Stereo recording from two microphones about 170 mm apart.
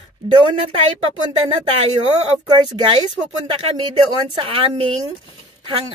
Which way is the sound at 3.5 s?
30° right (ahead or behind).